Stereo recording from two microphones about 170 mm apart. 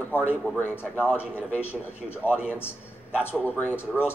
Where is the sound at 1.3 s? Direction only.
10° left (ahead or behind).